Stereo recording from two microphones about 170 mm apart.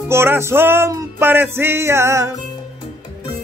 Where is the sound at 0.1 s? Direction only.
15° right (ahead or behind).